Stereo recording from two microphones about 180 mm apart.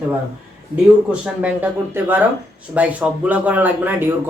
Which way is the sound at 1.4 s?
10° right (ahead or behind).